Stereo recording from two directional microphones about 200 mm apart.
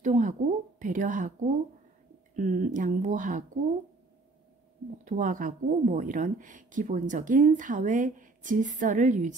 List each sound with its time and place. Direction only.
0.0 s a sound: 40° right (ahead or behind)
2.3 s speech: 40° right (ahead or behind)
5.0 s speech: 40° right (ahead or behind)